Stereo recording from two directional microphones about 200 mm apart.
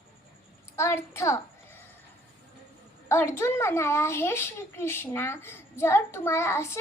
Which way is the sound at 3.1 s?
10° left (ahead or behind).